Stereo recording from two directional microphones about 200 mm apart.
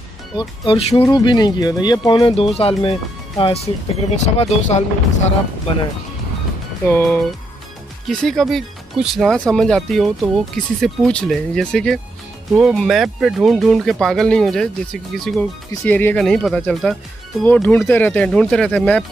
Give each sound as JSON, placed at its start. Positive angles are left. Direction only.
{"t": 0.4, "sound": "speech", "side_deg": 30}
{"t": 6.9, "sound": "speech", "side_deg": 10}